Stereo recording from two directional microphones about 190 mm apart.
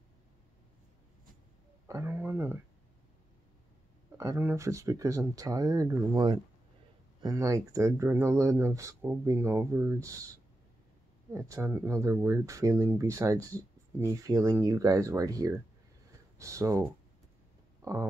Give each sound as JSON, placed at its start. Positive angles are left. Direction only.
{"t": 1.9, "sound": "speech", "side_deg": -15}
{"t": 4.2, "sound": "speech", "side_deg": -15}
{"t": 11.3, "sound": "speech", "side_deg": -15}
{"t": 17.8, "sound": "speech", "side_deg": -20}